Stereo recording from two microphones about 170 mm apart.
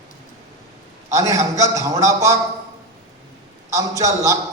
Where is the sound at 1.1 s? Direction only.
20° right (ahead or behind).